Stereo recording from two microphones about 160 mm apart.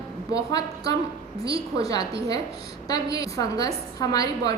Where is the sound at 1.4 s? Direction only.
20° left (ahead or behind).